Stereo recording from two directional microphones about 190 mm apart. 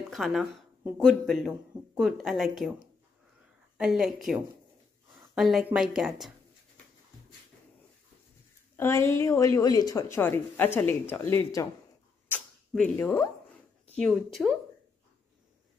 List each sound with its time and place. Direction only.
0.1 s a woman's voice: centre (ahead or behind)
3.7 s a woman's voice: 5° right (ahead or behind)
5.3 s a woman's voice: centre (ahead or behind)
8.7 s a woman's voice: 15° left (ahead or behind)
13.9 s a woman's voice: centre (ahead or behind)